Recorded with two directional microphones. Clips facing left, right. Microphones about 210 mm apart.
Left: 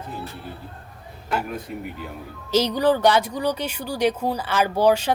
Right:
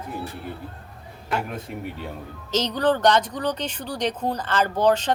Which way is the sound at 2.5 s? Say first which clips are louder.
Left 3 dB; 10° left (ahead or behind).